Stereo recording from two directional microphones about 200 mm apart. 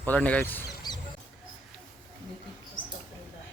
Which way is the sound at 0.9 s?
20° left (ahead or behind).